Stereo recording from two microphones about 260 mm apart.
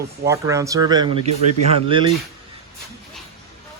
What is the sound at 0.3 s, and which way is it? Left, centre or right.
Speech, centre.